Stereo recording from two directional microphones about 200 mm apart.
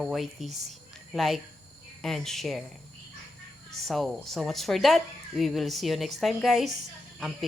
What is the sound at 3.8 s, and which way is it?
Speech, centre (ahead or behind).